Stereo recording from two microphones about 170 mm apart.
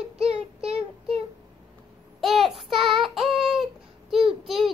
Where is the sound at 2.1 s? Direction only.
Centre (ahead or behind).